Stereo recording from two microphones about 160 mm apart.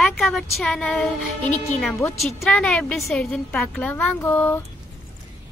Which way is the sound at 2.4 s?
5° left (ahead or behind).